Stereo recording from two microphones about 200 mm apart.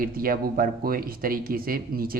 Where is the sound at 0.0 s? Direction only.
45° right (ahead or behind).